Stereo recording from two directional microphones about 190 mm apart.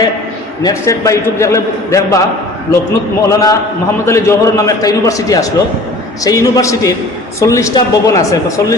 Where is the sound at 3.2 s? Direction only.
15° left (ahead or behind).